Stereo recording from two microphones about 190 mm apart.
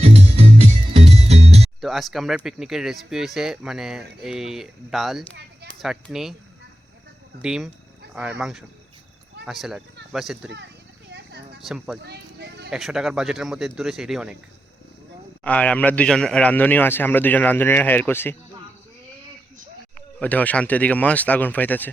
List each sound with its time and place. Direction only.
0.0 s music: 35° right (ahead or behind)
1.8 s speech: centre (ahead or behind)
7.4 s speech: 5° right (ahead or behind)
11.1 s a sound: 60° right (ahead or behind)
11.6 s speech: 5° right (ahead or behind)
12.0 s speech: 60° right (ahead or behind)
12.7 s speech: 5° right (ahead or behind)
15.4 s a man's voice: 5° left (ahead or behind)
20.1 s a man's voice: 10° left (ahead or behind)